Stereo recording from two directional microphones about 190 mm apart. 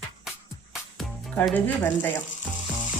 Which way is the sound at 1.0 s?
5° left (ahead or behind).